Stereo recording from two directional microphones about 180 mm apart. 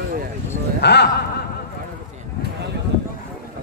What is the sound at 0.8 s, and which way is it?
Speech, 70° left (ahead or behind).